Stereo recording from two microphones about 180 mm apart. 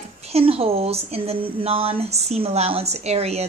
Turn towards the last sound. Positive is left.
turn(degrees=-35)  # may be behind; listen again after turning